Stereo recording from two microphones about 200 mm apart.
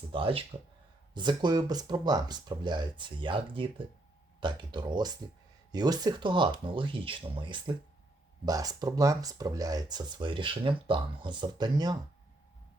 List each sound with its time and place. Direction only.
0.1 s speech: 25° right (ahead or behind)